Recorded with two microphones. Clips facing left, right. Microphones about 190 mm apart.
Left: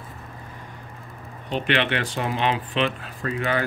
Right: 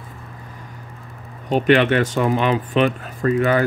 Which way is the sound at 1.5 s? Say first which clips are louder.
Right 8 dB; 45° right (ahead or behind).